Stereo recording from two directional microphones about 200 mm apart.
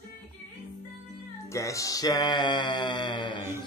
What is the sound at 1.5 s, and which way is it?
Music, 15° left (ahead or behind).